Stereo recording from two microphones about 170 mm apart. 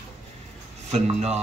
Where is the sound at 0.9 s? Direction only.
40° right (ahead or behind).